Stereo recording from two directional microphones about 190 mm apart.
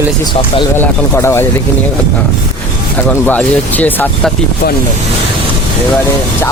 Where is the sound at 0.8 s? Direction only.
10° left (ahead or behind).